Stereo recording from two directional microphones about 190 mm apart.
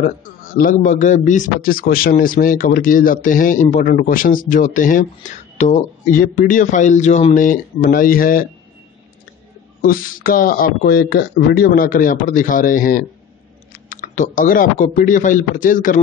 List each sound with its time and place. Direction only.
0.0 s speech: 45° left (ahead or behind)
9.8 s speech: 50° left (ahead or behind)